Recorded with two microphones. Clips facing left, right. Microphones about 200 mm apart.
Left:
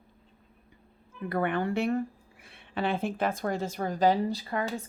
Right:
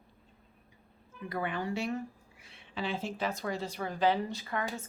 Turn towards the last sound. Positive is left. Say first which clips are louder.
# left 4 dB
turn(degrees=35)  # may be behind; listen again after turning